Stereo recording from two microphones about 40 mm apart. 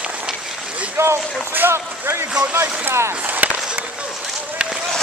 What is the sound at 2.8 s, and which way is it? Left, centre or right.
Speech, right.